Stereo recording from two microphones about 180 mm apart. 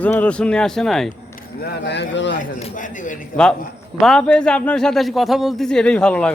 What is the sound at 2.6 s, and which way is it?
Speech, 40° left (ahead or behind).